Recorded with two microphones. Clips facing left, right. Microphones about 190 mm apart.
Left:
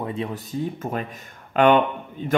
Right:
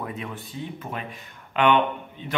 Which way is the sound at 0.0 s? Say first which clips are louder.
Left 5 dB; 30° left (ahead or behind).